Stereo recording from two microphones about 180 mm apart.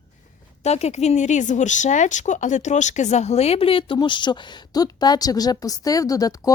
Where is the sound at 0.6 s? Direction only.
35° left (ahead or behind).